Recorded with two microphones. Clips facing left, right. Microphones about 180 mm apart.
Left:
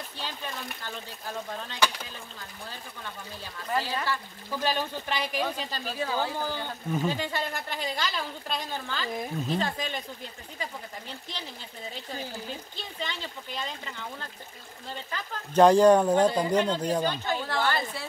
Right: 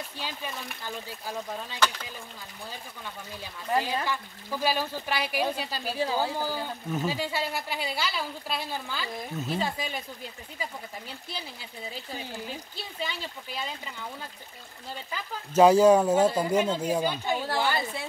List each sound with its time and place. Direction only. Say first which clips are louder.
0.2 s speech: left 1 dB; centre (ahead or behind)
3.7 s speech: right 2 dB; 15° right (ahead or behind)
12.7 s speech: right 1 dB; 5° right (ahead or behind)
15.0 s speech: even; 5° right (ahead or behind)